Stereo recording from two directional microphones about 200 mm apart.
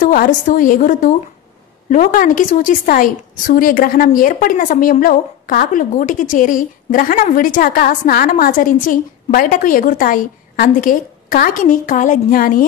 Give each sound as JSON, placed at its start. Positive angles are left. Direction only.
{"t": 0.0, "sound": "a woman's voice", "side_deg": 45}